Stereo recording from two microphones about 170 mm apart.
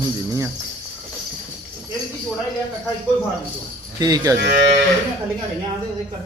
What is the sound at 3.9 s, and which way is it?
Speech, 20° right (ahead or behind).